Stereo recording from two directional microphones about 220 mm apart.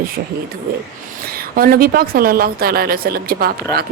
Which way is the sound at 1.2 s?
40° right (ahead or behind).